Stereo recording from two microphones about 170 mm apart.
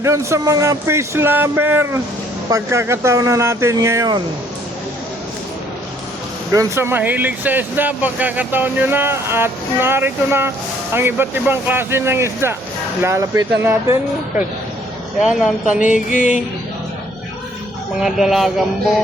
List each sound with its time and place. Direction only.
0.0 s speech: 15° right (ahead or behind)
6.5 s speech: 20° right (ahead or behind)
15.2 s speech: centre (ahead or behind)
18.0 s speech: centre (ahead or behind)